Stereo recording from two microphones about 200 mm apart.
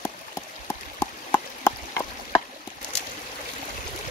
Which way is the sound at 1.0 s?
10° left (ahead or behind).